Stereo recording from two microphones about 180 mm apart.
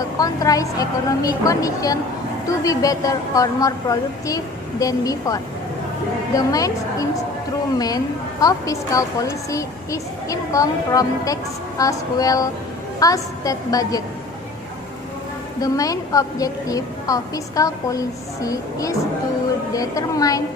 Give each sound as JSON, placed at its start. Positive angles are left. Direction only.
{"t": 0.2, "sound": "a woman's voice", "side_deg": 20}
{"t": 15.6, "sound": "a woman's voice", "side_deg": 20}